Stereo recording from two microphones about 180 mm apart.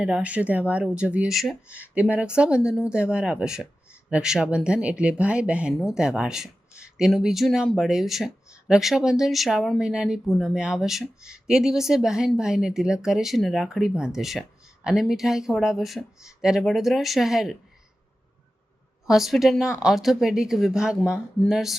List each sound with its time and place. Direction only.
0.0 s speech: 5° right (ahead or behind)
19.0 s speech: centre (ahead or behind)